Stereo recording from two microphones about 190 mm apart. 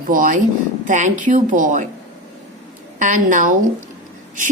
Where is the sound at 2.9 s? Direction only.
40° right (ahead or behind).